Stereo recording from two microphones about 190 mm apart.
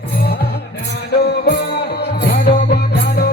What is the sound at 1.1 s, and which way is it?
Music, 60° left (ahead or behind).